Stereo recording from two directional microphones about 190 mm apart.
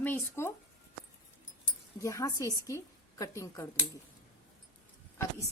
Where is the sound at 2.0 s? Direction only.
15° left (ahead or behind).